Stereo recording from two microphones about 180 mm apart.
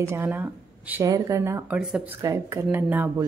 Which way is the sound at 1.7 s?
5° right (ahead or behind).